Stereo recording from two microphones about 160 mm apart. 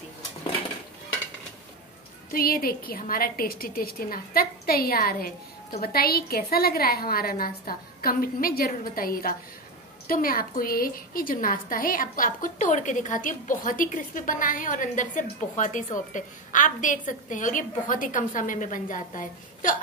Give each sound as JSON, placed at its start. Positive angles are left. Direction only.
{"t": 2.3, "sound": "a woman's voice", "side_deg": 65}